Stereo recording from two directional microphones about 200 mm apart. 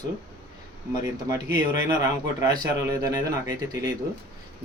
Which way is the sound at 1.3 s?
15° right (ahead or behind).